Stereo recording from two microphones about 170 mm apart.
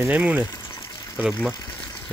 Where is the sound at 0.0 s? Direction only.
10° right (ahead or behind).